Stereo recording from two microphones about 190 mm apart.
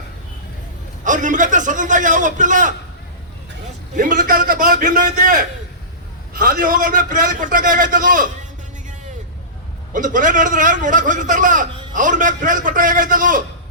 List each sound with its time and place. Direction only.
1.0 s a man's voice: 40° right (ahead or behind)
3.9 s a man's voice: 45° right (ahead or behind)
9.9 s a man's voice: 45° right (ahead or behind)